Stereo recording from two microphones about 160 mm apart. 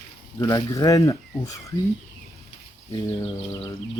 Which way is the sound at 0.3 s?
20° left (ahead or behind).